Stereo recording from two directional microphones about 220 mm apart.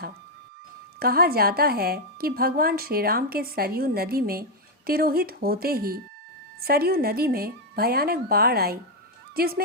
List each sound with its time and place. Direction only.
0.9 s a woman's voice: 45° right (ahead or behind)